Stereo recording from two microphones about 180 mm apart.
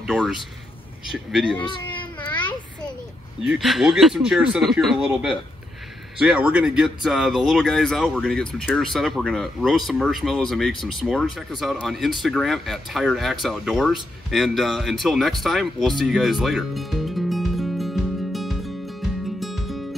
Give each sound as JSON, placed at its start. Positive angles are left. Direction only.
{"t": 0.0, "sound": "speech", "side_deg": 0}
{"t": 1.6, "sound": "cat", "side_deg": 25}
{"t": 3.4, "sound": "speech", "side_deg": 0}
{"t": 14.3, "sound": "a sound", "side_deg": 0}